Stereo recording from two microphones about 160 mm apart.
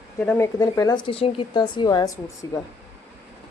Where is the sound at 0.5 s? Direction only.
25° left (ahead or behind).